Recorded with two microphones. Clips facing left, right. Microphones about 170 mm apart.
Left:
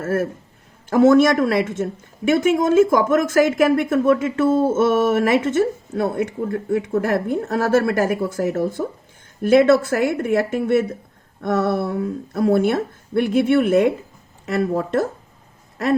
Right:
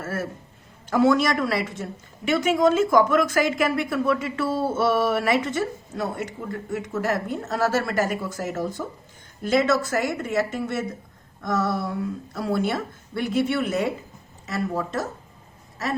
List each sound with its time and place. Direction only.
0.0 s a man's voice: 50° left (ahead or behind)